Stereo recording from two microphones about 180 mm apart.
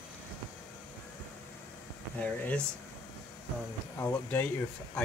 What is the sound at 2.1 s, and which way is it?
Speech, 5° left (ahead or behind).